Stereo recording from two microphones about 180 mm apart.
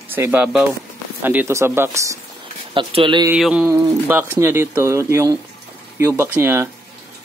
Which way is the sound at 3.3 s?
5° right (ahead or behind).